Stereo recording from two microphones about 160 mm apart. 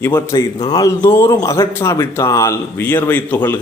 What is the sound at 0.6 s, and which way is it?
A man's voice, 25° left (ahead or behind).